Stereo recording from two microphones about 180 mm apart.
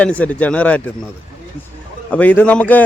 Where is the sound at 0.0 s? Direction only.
5° left (ahead or behind).